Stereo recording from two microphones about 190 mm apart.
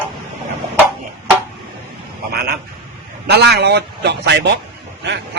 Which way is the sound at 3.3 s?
60° right (ahead or behind).